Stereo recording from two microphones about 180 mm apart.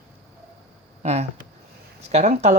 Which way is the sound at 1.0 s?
35° right (ahead or behind).